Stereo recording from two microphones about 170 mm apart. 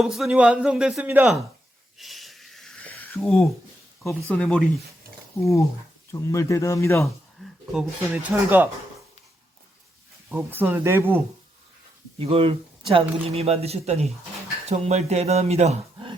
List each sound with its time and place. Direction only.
0.0 s speech: centre (ahead or behind)
2.0 s a sound: centre (ahead or behind)
4.0 s speech: 5° left (ahead or behind)
6.1 s speech: 15° left (ahead or behind)
7.7 s speech: centre (ahead or behind)
10.5 s speech: 10° right (ahead or behind)
12.2 s speech: 35° right (ahead or behind)